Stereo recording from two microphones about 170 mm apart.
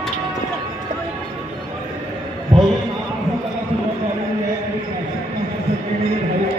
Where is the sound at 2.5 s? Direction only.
30° right (ahead or behind).